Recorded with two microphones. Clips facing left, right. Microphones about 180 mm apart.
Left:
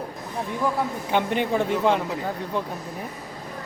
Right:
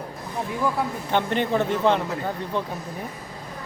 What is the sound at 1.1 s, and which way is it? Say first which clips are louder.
Speech: even; 10° left (ahead or behind).